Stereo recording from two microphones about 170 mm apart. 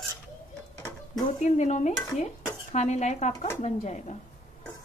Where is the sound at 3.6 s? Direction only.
40° left (ahead or behind).